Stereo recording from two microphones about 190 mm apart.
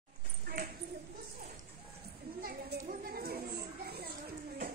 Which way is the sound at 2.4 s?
50° right (ahead or behind).